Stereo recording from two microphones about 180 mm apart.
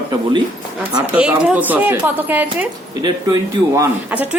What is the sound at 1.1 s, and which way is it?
Speech, 5° right (ahead or behind).